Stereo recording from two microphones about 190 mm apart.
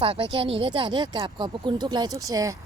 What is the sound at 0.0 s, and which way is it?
A woman's voice, 30° right (ahead or behind).